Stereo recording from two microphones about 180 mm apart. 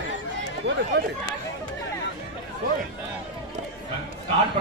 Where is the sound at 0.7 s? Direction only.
75° right (ahead or behind).